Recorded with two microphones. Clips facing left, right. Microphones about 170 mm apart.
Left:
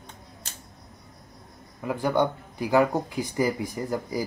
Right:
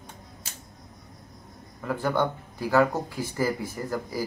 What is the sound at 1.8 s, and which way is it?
Speech, 15° left (ahead or behind).